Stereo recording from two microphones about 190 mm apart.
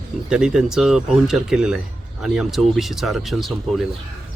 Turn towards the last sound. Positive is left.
turn(degrees=0)  # may be behind; listen again after turning